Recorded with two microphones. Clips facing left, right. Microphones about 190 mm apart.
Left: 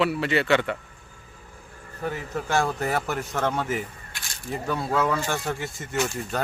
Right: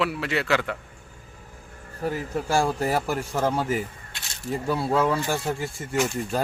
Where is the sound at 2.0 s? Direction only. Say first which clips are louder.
Right 2 dB; 5° right (ahead or behind).